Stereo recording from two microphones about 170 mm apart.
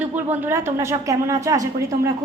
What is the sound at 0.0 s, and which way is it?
A woman's voice, 10° right (ahead or behind).